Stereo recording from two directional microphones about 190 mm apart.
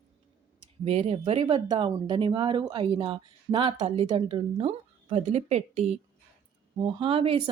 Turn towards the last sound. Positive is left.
turn(degrees=-30)  # may be behind; listen again after turning